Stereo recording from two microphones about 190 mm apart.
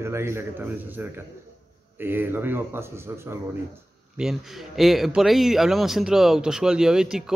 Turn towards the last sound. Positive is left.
turn(degrees=-5)  # may be behind; listen again after turning